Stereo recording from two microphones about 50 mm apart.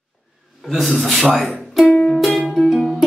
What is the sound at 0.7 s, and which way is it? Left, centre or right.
Speech, centre.